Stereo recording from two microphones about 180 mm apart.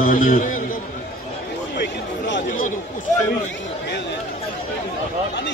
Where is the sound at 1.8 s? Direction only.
85° left.